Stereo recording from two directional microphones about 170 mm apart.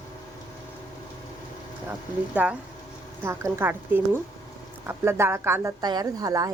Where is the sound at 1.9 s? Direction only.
10° right (ahead or behind).